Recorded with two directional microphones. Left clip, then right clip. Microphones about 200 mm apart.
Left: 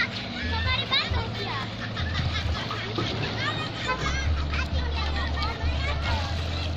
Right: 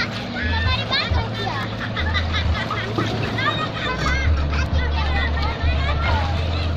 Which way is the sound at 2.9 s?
60° right (ahead or behind).